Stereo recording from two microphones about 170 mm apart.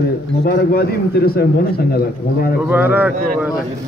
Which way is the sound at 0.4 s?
65° left (ahead or behind).